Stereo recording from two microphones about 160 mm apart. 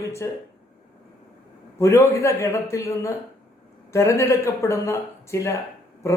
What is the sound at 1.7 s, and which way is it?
A man's voice, 15° left (ahead or behind).